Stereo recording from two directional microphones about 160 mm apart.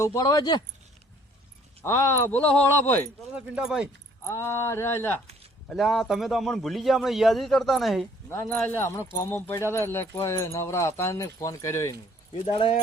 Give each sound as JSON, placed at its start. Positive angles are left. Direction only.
{"t": 0.0, "sound": "speech", "side_deg": 20}
{"t": 1.8, "sound": "speech", "side_deg": 15}
{"t": 3.3, "sound": "speech", "side_deg": -10}
{"t": 4.3, "sound": "speech", "side_deg": 15}
{"t": 5.6, "sound": "a man's voice", "side_deg": 0}
{"t": 8.3, "sound": "speech", "side_deg": 15}
{"t": 12.5, "sound": "speech", "side_deg": 35}